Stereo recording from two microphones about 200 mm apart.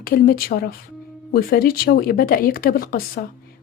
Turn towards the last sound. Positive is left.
turn(degrees=45)  # may be behind; listen again after turning